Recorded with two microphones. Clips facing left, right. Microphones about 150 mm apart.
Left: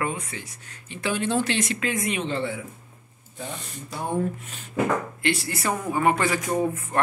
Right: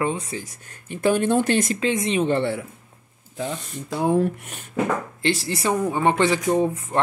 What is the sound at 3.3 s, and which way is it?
Speech, 90° right.